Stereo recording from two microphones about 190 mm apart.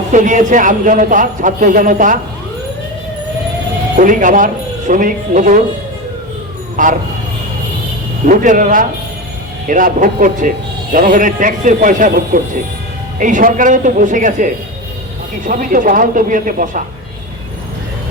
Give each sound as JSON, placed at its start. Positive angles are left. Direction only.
{"t": 0.1, "sound": "a man's voice", "side_deg": -40}
{"t": 3.9, "sound": "a man's voice", "side_deg": -45}
{"t": 6.8, "sound": "a man's voice", "side_deg": -45}
{"t": 8.3, "sound": "a man's voice", "side_deg": -45}